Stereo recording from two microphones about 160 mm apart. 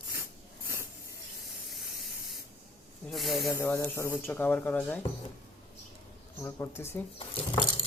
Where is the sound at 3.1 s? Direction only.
Centre (ahead or behind).